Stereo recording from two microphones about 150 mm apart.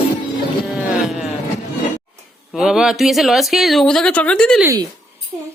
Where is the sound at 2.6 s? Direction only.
5° right (ahead or behind).